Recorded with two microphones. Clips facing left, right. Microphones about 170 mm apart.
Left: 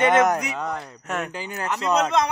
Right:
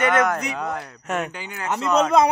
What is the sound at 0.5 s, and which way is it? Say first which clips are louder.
Speech: right 1 dB; 5° right (ahead or behind).